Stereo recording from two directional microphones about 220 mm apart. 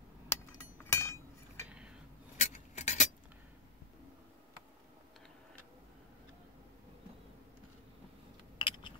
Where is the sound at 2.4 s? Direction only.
35° left (ahead or behind).